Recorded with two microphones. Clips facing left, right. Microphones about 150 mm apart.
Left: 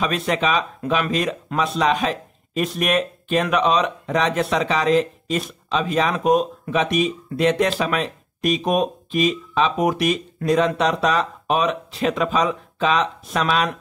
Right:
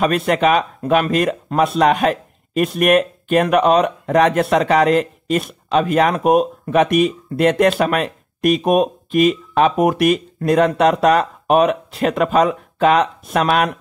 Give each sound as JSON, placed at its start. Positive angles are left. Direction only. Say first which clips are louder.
{"t": 0.0, "sound": "speech", "louder": "right 6 dB", "side_deg": -55}